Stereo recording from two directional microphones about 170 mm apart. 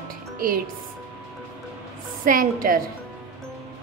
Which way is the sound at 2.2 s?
55° right (ahead or behind).